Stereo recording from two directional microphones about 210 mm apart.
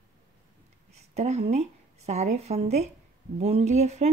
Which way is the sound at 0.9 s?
30° right (ahead or behind).